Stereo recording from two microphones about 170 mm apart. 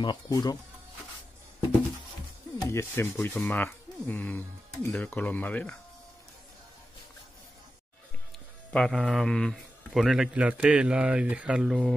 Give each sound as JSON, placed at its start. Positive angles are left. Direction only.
{"t": 0.0, "sound": "speech", "side_deg": 25}
{"t": 2.7, "sound": "speech", "side_deg": 15}
{"t": 8.7, "sound": "a man's voice", "side_deg": 5}